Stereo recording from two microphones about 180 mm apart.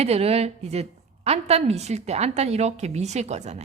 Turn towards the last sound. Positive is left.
turn(degrees=-40)  # may be behind; listen again after turning